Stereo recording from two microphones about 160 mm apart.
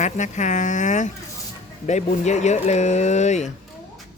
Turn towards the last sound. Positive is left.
turn(degrees=45)  # may be behind; listen again after turning